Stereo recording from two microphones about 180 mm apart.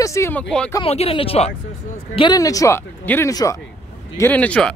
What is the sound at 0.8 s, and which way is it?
Speech, 35° left (ahead or behind).